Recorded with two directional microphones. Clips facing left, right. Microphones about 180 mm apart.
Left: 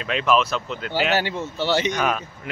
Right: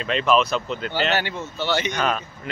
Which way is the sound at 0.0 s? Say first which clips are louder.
Right 1 dB; 5° left (ahead or behind).